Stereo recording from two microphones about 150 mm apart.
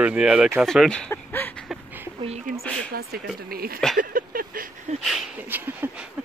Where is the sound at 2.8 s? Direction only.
90° right.